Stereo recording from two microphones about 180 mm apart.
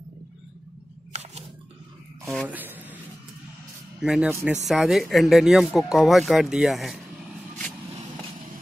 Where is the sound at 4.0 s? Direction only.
5° right (ahead or behind).